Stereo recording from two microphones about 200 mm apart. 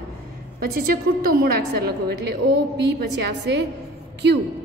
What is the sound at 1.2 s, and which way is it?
A woman's voice, 50° right (ahead or behind).